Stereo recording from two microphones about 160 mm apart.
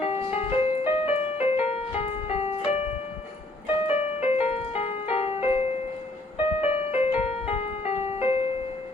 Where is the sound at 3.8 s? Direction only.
40° left (ahead or behind).